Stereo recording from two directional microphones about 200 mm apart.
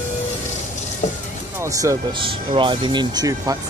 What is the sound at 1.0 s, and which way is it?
Vehicle, 35° left (ahead or behind).